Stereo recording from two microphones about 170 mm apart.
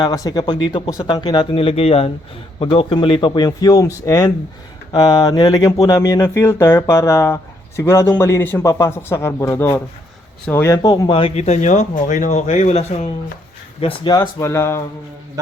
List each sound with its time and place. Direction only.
0.0 s speech: 20° left (ahead or behind); by 13.1 s 40° left (ahead or behind)
13.8 s speech: 25° left (ahead or behind)